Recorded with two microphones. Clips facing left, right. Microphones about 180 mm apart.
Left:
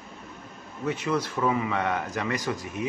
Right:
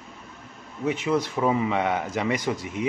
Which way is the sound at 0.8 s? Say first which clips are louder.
Right 3 dB; 20° right (ahead or behind).